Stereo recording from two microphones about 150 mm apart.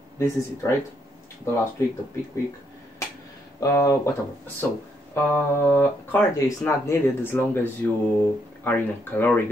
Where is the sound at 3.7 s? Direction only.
20° left (ahead or behind).